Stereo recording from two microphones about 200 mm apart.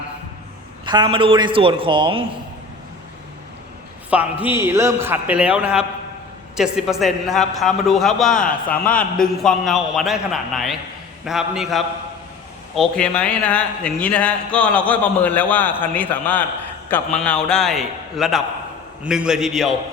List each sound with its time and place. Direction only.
0.9 s a woman's voice: 25° right (ahead or behind)
4.1 s a man's voice: 5° right (ahead or behind)